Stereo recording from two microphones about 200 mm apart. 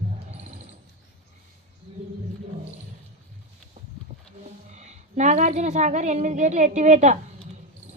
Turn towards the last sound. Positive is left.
turn(degrees=-35)  # may be behind; listen again after turning